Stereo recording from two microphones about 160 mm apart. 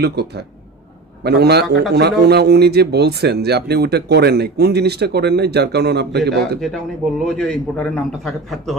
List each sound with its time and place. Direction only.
0.0 s a man's voice: 90° right
7.2 s a man's voice: 5° left (ahead or behind)